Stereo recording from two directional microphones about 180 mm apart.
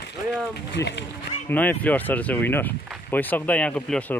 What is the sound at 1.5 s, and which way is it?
Speech, 10° left (ahead or behind).